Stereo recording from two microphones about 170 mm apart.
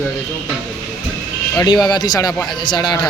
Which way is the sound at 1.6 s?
25° left (ahead or behind).